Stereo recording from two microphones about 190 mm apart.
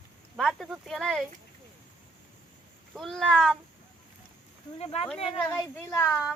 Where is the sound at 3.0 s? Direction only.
Centre (ahead or behind).